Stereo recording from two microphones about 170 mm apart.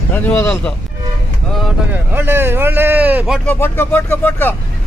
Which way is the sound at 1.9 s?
10° right (ahead or behind).